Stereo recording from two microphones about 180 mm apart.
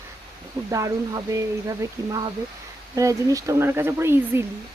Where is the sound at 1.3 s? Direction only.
20° right (ahead or behind).